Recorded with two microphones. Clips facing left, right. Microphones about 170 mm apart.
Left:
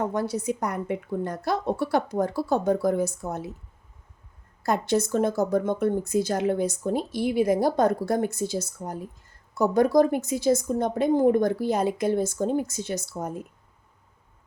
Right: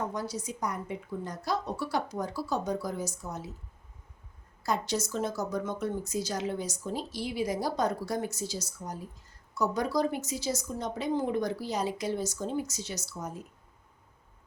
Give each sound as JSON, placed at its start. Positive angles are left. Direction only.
{"t": 0.0, "sound": "speech", "side_deg": 60}
{"t": 4.6, "sound": "speech", "side_deg": 55}